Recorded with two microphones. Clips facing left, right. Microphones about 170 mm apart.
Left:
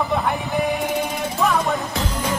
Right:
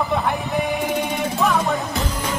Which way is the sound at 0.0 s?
Centre (ahead or behind).